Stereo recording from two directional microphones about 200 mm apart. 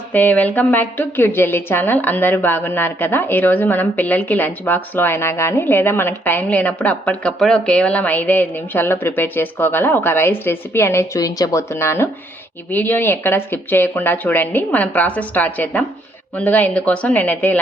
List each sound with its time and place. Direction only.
0.1 s a woman's voice: 10° left (ahead or behind)